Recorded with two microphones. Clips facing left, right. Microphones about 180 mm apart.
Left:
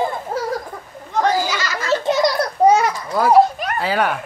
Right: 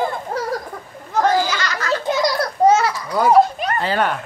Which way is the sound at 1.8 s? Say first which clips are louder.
Left 3 dB; 25° left (ahead or behind).